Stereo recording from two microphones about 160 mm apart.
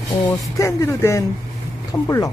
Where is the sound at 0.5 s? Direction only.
20° left (ahead or behind).